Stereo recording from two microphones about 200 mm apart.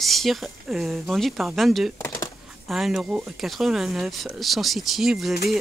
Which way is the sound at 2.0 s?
15° left (ahead or behind).